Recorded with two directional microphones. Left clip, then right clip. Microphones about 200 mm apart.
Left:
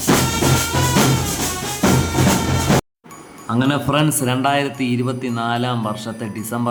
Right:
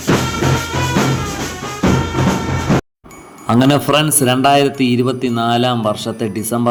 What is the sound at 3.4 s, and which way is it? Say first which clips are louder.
A man's voice: right 6 dB; 35° right (ahead or behind).